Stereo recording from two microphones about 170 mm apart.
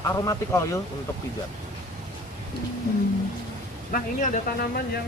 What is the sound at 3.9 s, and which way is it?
Speech, 55° left (ahead or behind).